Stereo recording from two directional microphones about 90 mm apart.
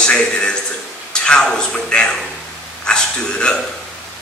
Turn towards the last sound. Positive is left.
turn(degrees=10)  # may be behind; listen again after turning